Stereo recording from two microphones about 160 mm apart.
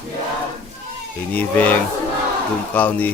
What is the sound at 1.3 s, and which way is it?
Speech, 10° left (ahead or behind).